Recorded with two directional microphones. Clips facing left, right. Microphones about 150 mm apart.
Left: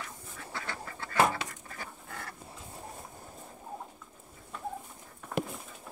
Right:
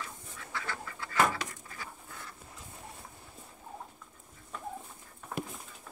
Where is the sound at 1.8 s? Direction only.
65° left (ahead or behind).